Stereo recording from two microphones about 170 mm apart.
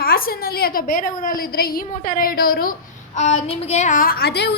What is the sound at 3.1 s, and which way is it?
A woman's voice, 40° left (ahead or behind).